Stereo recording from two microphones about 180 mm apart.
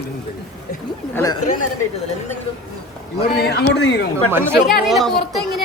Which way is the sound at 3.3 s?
65° left (ahead or behind).